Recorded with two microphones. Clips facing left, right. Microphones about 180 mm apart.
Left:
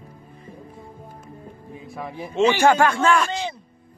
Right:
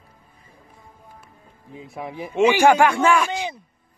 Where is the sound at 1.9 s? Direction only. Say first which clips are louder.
Right 1 dB; 15° right (ahead or behind).